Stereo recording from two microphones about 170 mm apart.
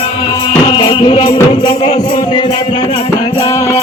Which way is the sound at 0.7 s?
30° left (ahead or behind).